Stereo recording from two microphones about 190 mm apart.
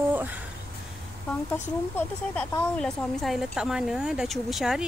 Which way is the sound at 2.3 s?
5° left (ahead or behind).